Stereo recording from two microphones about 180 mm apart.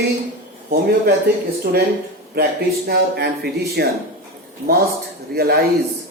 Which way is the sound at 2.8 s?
65° right (ahead or behind).